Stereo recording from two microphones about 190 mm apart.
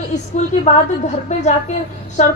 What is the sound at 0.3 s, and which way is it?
A woman's voice, 40° left (ahead or behind).